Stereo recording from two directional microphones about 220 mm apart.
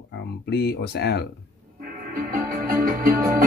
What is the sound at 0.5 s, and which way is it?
Speech, 50° left (ahead or behind).